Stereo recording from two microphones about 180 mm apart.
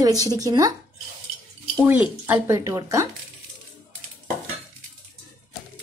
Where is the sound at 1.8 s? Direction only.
10° right (ahead or behind).